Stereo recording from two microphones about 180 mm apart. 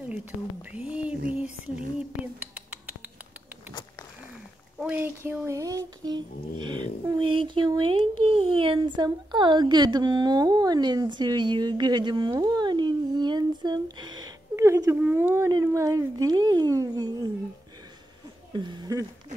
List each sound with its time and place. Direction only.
0.1 s speech: 10° right (ahead or behind)
4.7 s a sound: 10° right (ahead or behind)
18.5 s speech: 25° right (ahead or behind)